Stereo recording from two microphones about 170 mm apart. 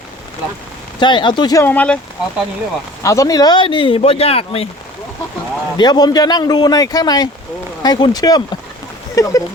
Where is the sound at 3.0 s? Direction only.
20° left (ahead or behind); by 4.7 s 35° left (ahead or behind).